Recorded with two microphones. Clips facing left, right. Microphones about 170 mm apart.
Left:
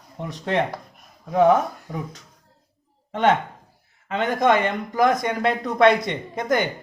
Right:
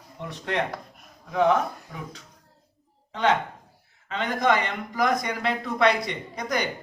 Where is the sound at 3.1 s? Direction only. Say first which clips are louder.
Left 4 dB; 50° left (ahead or behind).